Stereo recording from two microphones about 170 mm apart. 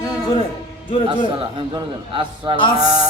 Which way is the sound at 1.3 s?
30° right (ahead or behind).